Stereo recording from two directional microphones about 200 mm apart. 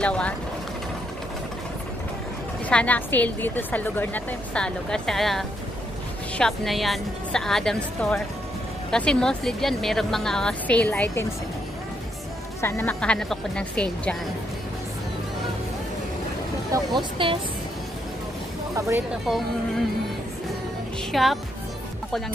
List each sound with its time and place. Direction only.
0.0 s speech: 5° left (ahead or behind)
2.7 s a woman's voice: 5° left (ahead or behind)
12.6 s a woman's voice: 10° left (ahead or behind)
16.7 s speech: 25° right (ahead or behind)
18.8 s speech: 15° right (ahead or behind)
21.1 s speech: centre (ahead or behind)